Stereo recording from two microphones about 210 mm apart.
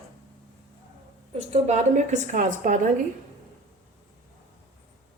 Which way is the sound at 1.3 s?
30° right (ahead or behind).